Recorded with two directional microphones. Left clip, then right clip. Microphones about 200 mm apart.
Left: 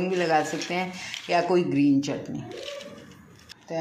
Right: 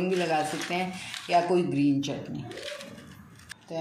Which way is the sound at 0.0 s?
15° left (ahead or behind).